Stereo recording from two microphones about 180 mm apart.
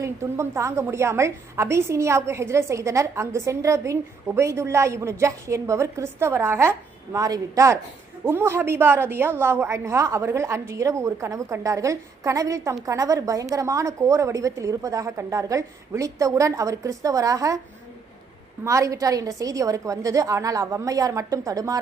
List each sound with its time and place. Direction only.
0.0 s a woman's voice: 15° right (ahead or behind)
18.6 s a woman's voice: 15° right (ahead or behind)